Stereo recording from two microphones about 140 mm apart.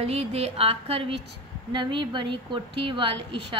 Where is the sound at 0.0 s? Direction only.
45° right (ahead or behind).